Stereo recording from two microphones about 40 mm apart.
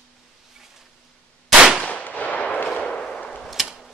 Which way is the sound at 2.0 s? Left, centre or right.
Left.